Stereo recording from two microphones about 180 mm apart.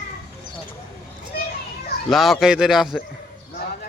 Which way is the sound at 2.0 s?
Centre (ahead or behind).